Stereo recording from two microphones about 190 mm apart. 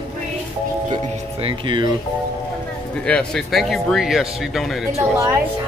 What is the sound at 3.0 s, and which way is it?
Speech, 5° left (ahead or behind).